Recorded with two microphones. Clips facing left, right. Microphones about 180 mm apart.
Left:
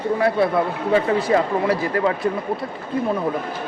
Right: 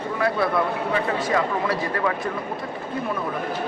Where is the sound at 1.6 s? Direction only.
25° left (ahead or behind).